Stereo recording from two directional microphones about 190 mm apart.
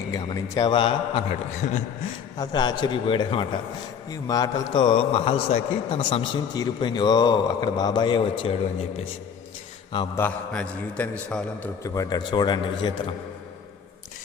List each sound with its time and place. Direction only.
0.1 s a man's voice: 20° left (ahead or behind); by 1.8 s 35° left (ahead or behind)
2.4 s a man's voice: 25° left (ahead or behind)
10.2 s a man's voice: 5° left (ahead or behind)
11.8 s a man's voice: 20° left (ahead or behind)